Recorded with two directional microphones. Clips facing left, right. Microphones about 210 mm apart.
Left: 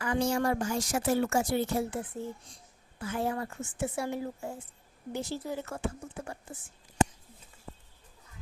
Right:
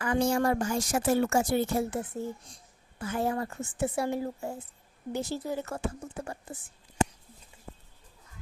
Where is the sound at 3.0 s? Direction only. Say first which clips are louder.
Right 2 dB; 40° right (ahead or behind).